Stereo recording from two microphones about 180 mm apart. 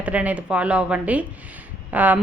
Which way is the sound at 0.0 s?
10° right (ahead or behind).